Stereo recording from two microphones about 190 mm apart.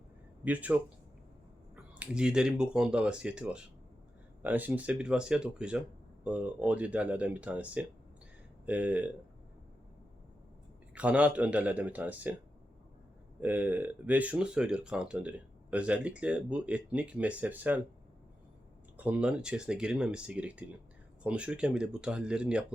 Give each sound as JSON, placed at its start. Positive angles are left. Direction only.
{"t": 0.4, "sound": "speech", "side_deg": -10}
{"t": 10.9, "sound": "speech", "side_deg": -5}
{"t": 13.4, "sound": "speech", "side_deg": -10}
{"t": 18.9, "sound": "speech", "side_deg": -10}